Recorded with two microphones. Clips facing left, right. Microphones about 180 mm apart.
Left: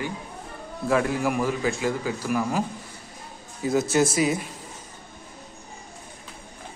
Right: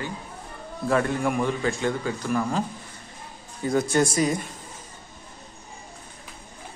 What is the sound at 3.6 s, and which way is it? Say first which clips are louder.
Speech: even; 5° left (ahead or behind).